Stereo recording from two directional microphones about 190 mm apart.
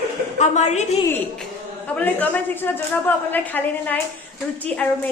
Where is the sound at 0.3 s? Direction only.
35° left (ahead or behind).